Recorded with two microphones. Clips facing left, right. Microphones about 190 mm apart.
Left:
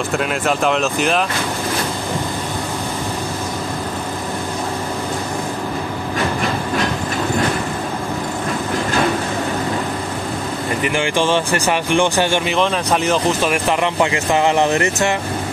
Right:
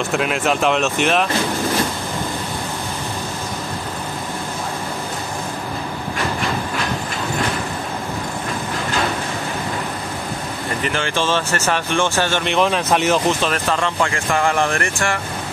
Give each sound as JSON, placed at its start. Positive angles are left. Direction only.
{"t": 0.1, "sound": "speech", "side_deg": 0}
{"t": 10.8, "sound": "speech", "side_deg": 15}
{"t": 12.4, "sound": "speech", "side_deg": 0}
{"t": 13.4, "sound": "speech", "side_deg": 15}